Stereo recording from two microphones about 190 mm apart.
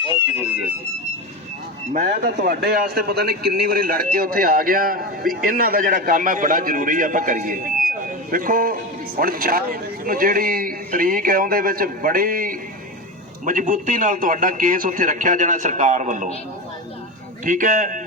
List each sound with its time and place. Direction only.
0.1 s speech: 10° right (ahead or behind)
1.9 s a man's voice: 50° right (ahead or behind)
17.4 s a man's voice: 45° right (ahead or behind)